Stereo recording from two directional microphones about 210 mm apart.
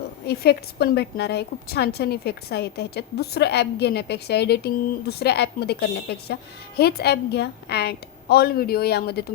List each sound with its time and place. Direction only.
0.3 s a woman's voice: 50° left (ahead or behind)